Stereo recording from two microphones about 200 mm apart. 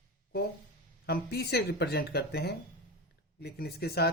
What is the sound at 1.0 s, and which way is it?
Speech, 50° left (ahead or behind).